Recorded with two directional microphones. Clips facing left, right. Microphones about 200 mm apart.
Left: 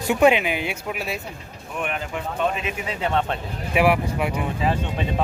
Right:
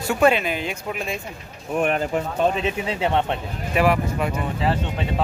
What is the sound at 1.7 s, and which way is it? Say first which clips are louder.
Speech: right 7 dB; 40° right (ahead or behind).